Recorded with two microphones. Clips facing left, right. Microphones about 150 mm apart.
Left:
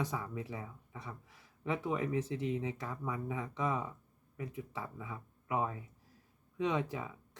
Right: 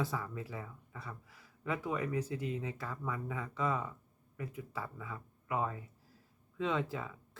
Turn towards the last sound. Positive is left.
turn(degrees=15)  # may be behind; listen again after turning